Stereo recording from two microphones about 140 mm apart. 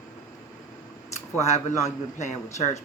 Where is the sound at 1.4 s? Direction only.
55° left (ahead or behind).